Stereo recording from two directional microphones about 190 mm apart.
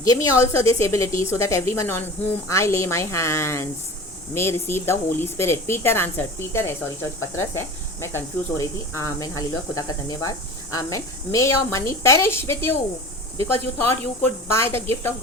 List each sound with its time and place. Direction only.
0.0 s speech: 15° left (ahead or behind)